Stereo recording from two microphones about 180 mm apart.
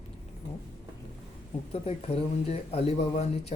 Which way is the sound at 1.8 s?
35° left (ahead or behind).